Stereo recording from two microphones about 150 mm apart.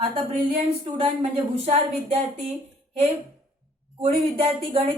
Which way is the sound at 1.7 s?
45° right (ahead or behind).